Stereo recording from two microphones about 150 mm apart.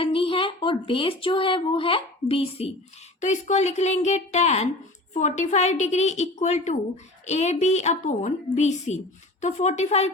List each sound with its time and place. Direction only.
0.0 s speech: 40° left (ahead or behind)
3.2 s a woman's voice: 55° left (ahead or behind)